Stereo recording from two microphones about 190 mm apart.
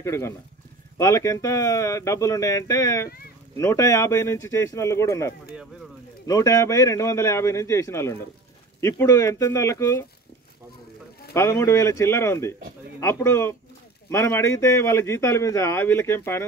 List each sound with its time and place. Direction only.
0.0 s a man's voice: 15° left (ahead or behind)
11.3 s a man's voice: 15° left (ahead or behind)